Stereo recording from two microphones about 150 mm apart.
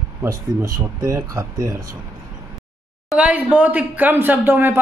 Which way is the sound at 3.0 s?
10° right (ahead or behind).